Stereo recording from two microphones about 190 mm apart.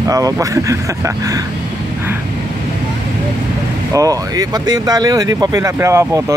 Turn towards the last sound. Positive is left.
turn(degrees=-15)  # may be behind; listen again after turning